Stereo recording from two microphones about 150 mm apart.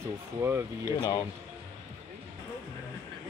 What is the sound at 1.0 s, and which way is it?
Speech, 25° left (ahead or behind).